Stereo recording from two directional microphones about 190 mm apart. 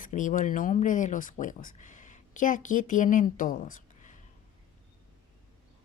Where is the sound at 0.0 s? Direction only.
45° left (ahead or behind).